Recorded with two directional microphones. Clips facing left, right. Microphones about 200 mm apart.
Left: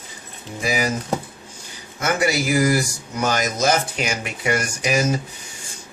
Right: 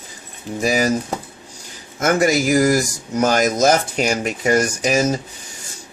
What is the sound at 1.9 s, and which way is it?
Speech, 45° right (ahead or behind).